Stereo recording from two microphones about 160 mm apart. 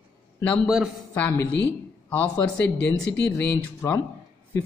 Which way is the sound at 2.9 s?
5° left (ahead or behind).